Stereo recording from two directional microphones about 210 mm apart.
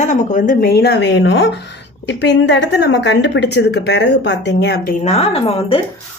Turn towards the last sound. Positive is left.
turn(degrees=25)  # may be behind; listen again after turning